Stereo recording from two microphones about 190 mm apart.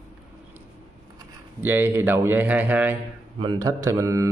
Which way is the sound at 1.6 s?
10° right (ahead or behind).